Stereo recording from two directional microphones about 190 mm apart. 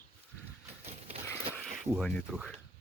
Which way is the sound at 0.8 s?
35° right (ahead or behind).